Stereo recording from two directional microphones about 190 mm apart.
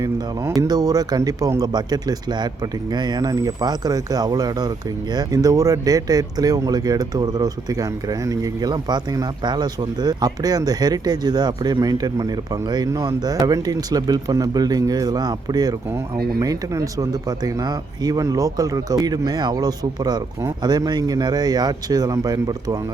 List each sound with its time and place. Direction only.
0.6 s speech: 20° right (ahead or behind)